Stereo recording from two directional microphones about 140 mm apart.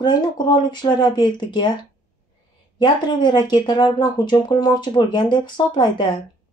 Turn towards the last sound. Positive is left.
turn(degrees=35)  # may be behind; listen again after turning